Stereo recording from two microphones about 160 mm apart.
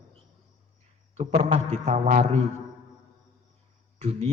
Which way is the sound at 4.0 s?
45° right (ahead or behind).